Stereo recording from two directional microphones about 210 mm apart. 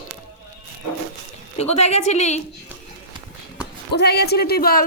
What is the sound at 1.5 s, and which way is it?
Speech, 30° left (ahead or behind).